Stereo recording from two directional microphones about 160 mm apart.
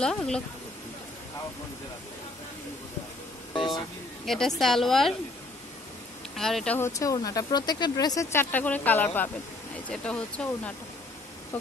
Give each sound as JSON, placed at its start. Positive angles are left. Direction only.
{"t": 0.0, "sound": "a woman's voice", "side_deg": 5}
{"t": 4.3, "sound": "a woman's voice", "side_deg": 0}
{"t": 6.3, "sound": "a woman's voice", "side_deg": 0}
{"t": 6.8, "sound": "speech", "side_deg": 20}